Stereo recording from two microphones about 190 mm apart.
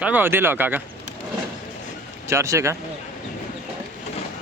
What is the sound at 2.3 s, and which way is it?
Speech, 15° right (ahead or behind).